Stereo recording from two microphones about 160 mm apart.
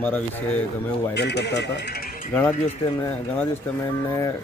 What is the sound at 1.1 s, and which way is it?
Speech, 90° left.